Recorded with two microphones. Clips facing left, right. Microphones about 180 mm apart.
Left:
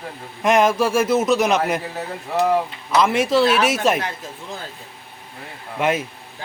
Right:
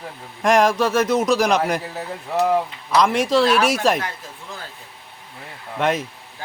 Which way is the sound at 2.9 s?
5° left (ahead or behind).